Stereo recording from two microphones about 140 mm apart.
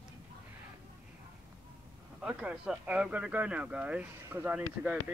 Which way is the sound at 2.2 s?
5° right (ahead or behind).